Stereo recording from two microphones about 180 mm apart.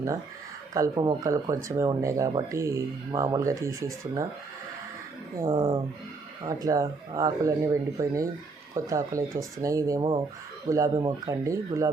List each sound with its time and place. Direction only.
0.7 s speech: 20° right (ahead or behind)
5.5 s speech: 30° right (ahead or behind)
6.4 s speech: 20° right (ahead or behind)